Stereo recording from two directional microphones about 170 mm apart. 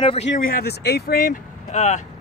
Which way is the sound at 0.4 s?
60° left (ahead or behind).